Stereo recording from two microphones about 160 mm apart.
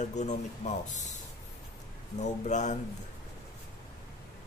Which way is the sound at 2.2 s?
45° left (ahead or behind).